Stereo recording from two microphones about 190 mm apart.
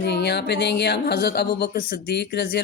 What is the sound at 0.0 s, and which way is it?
Speech, 60° left (ahead or behind).